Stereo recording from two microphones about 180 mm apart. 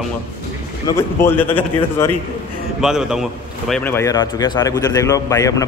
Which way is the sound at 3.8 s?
15° left (ahead or behind).